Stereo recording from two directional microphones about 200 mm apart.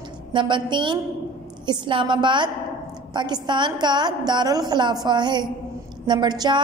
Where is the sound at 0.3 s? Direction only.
25° right (ahead or behind).